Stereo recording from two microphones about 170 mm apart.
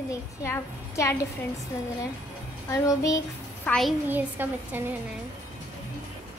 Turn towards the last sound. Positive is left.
turn(degrees=-10)  # may be behind; listen again after turning